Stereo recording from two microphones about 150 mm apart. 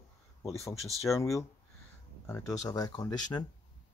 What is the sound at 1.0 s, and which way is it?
Speech, 20° left (ahead or behind).